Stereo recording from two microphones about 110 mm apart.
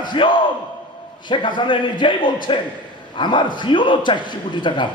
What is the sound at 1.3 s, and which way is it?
A man's voice, 45° left (ahead or behind).